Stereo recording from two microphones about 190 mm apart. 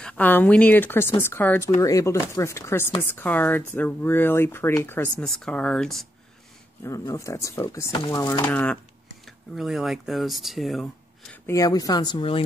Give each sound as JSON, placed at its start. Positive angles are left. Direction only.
{"t": 0.0, "sound": "speech", "side_deg": 10}
{"t": 6.8, "sound": "speech", "side_deg": 15}
{"t": 9.2, "sound": "speech", "side_deg": 0}
{"t": 11.4, "sound": "speech", "side_deg": 15}